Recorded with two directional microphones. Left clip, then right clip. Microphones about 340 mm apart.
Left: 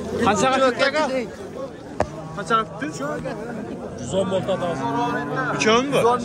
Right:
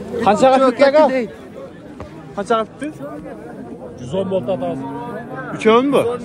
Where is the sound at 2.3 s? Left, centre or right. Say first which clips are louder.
Right 3 dB; right.